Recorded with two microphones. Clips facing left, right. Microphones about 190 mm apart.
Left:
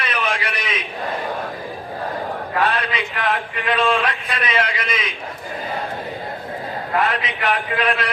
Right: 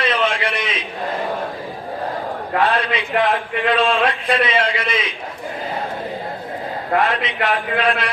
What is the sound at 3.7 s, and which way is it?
A man's voice, 30° right (ahead or behind).